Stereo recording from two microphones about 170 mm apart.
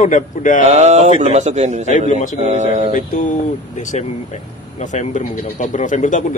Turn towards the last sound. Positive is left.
turn(degrees=50)  # may be behind; listen again after turning